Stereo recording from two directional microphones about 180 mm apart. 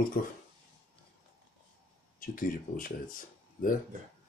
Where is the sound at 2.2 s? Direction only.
50° left (ahead or behind).